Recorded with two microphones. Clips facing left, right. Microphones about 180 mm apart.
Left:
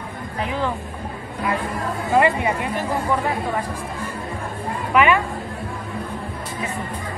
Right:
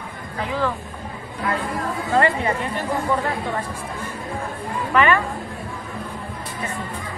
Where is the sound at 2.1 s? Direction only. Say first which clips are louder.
Left 2 dB; 15° left (ahead or behind).